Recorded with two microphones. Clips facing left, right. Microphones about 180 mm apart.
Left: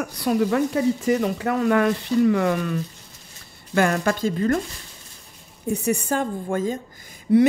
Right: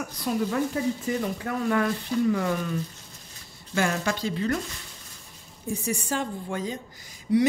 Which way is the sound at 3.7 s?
55° left (ahead or behind).